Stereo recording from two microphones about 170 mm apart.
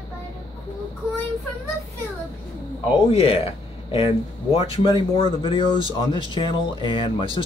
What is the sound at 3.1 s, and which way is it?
Speech, 35° left (ahead or behind).